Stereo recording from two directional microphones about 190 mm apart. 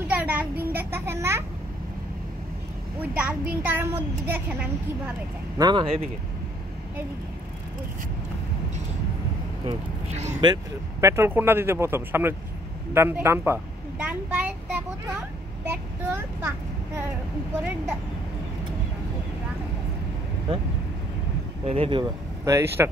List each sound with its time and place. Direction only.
0.1 s a sound: 10° right (ahead or behind)
3.0 s a child's voice: 5° right (ahead or behind)
5.6 s speech: 25° right (ahead or behind)
9.7 s speech: 35° right (ahead or behind)
10.4 s a child's voice: 20° right (ahead or behind)
20.5 s speech: 30° right (ahead or behind)
22.4 s a child's voice: 15° right (ahead or behind)